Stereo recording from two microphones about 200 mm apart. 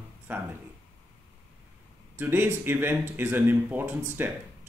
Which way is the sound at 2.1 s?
10° right (ahead or behind).